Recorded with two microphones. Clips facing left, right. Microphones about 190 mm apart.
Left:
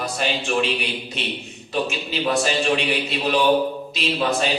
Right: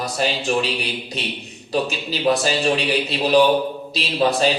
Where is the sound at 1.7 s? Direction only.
35° right (ahead or behind).